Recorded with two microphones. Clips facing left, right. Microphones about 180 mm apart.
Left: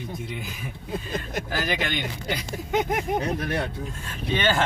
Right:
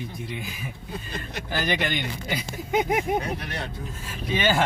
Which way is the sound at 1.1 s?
45° left (ahead or behind).